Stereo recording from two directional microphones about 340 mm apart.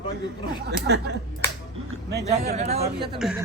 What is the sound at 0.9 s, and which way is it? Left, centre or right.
Speech, right.